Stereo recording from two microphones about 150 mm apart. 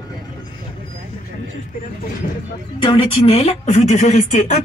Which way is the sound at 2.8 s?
35° left (ahead or behind).